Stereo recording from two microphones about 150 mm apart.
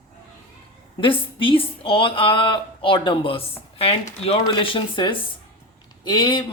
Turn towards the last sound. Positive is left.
turn(degrees=30)  # may be behind; listen again after turning